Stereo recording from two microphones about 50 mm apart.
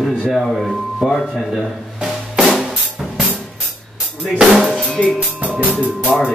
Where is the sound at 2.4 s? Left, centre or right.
Centre.